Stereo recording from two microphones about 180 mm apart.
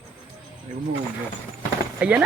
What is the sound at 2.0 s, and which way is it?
Speech, 5° right (ahead or behind).